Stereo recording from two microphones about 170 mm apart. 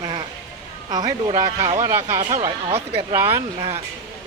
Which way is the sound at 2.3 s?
35° right (ahead or behind).